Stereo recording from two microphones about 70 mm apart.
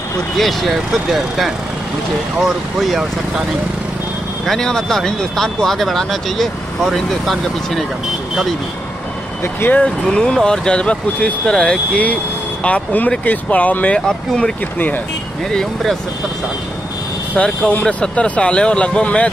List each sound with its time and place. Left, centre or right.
0.4 s speech: centre
2.9 s speech: centre
4.5 s speech: centre
9.4 s speech: left
10.0 s speech: centre
13.9 s speech: centre
15.5 s speech: centre
17.4 s speech: centre